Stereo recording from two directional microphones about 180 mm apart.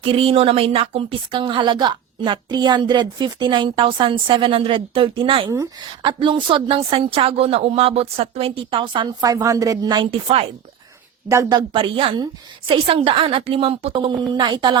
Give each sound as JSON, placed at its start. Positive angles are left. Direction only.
{"t": 0.0, "sound": "speech", "side_deg": -30}
{"t": 11.3, "sound": "speech", "side_deg": -20}